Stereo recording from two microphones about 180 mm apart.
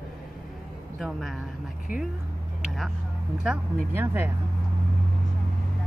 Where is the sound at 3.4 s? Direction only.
10° right (ahead or behind).